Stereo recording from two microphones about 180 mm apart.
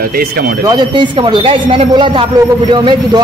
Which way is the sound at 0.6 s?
25° right (ahead or behind).